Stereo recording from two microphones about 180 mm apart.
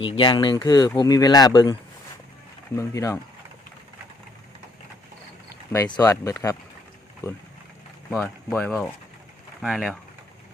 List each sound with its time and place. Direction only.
0.0 s speech: 30° left (ahead or behind)
2.7 s speech: 20° left (ahead or behind)
5.7 s speech: 20° left (ahead or behind)
8.2 s speech: 10° left (ahead or behind)
9.6 s speech: centre (ahead or behind)